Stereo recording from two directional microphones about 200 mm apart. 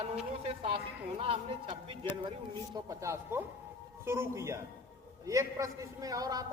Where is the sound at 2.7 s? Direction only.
15° right (ahead or behind).